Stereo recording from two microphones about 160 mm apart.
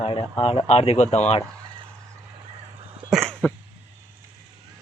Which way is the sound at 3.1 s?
Centre (ahead or behind).